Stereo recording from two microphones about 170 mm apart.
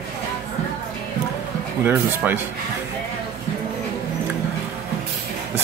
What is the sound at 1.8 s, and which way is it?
Speech, 10° right (ahead or behind).